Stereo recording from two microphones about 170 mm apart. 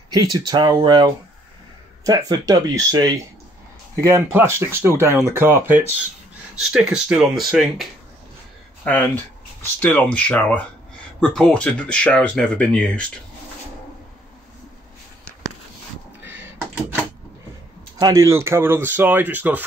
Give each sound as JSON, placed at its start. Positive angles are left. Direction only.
{"t": 0.1, "sound": "speech", "side_deg": -20}
{"t": 17.9, "sound": "speech", "side_deg": -20}